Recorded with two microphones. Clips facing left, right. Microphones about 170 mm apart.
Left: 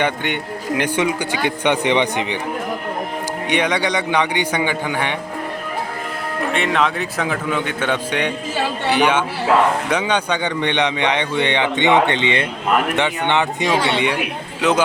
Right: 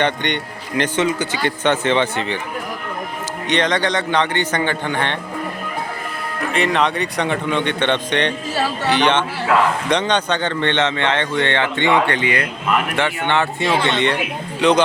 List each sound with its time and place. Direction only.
0.0 s a man's voice: 5° left (ahead or behind)
3.5 s a man's voice: 10° left (ahead or behind)
6.5 s a man's voice: centre (ahead or behind)